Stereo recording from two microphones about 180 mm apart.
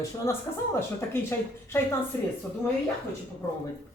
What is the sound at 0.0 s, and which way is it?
Speech, 15° left (ahead or behind).